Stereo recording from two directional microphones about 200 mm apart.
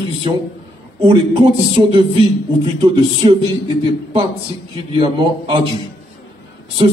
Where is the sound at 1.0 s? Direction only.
25° right (ahead or behind).